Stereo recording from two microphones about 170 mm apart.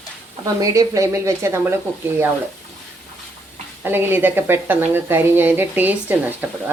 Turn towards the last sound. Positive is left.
turn(degrees=-10)  # may be behind; listen again after turning